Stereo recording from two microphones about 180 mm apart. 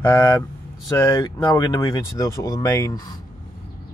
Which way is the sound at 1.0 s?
25° left (ahead or behind).